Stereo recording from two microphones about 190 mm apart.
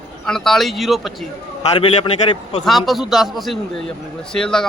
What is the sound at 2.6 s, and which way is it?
A man's voice, centre (ahead or behind).